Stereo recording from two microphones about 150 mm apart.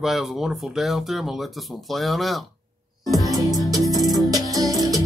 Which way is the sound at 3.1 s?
25° right (ahead or behind).